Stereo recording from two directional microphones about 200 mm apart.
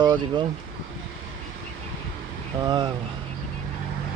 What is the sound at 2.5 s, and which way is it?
Speech, 20° right (ahead or behind).